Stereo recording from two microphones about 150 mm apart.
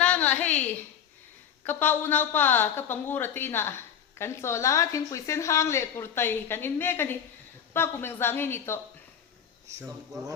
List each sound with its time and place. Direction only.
0.0 s a sound: 10° left (ahead or behind)
1.6 s a woman's voice: 15° left (ahead or behind)
9.6 s speech: 20° right (ahead or behind)